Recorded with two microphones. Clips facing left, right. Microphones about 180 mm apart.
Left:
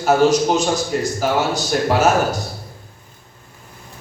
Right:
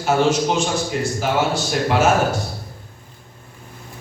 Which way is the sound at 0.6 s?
40° left (ahead or behind).